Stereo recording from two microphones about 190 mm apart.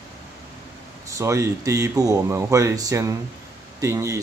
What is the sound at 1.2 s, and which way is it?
Speech, 15° right (ahead or behind).